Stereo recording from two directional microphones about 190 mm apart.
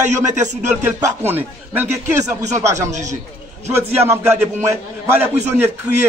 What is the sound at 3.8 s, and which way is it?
A man's voice, 10° right (ahead or behind).